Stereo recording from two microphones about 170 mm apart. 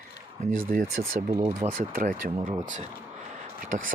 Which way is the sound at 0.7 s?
55° right (ahead or behind).